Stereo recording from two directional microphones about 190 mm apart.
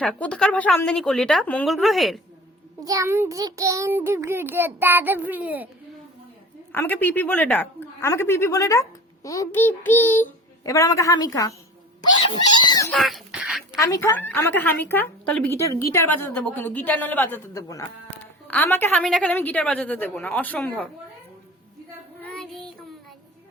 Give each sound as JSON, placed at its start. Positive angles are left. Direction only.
{"t": 0.0, "sound": "a woman's voice", "side_deg": 5}
{"t": 2.8, "sound": "a child's voice", "side_deg": -15}
{"t": 6.7, "sound": "a woman's voice", "side_deg": 10}
{"t": 12.9, "sound": "speech", "side_deg": 0}
{"t": 13.8, "sound": "a woman's voice", "side_deg": 15}
{"t": 22.2, "sound": "child singing", "side_deg": 0}